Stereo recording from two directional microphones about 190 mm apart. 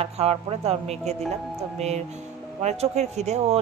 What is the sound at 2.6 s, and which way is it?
Speech, 35° right (ahead or behind).